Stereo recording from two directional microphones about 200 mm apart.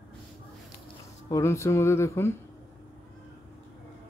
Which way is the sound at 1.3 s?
15° left (ahead or behind).